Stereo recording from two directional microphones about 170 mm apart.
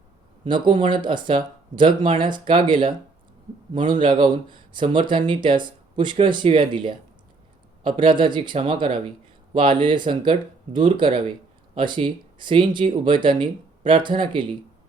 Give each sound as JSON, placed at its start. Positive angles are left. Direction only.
{"t": 0.4, "sound": "speech", "side_deg": -25}